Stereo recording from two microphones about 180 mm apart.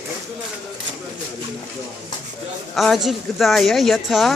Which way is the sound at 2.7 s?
Centre (ahead or behind).